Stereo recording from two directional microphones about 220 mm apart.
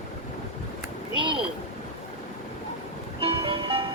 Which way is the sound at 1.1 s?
20° right (ahead or behind).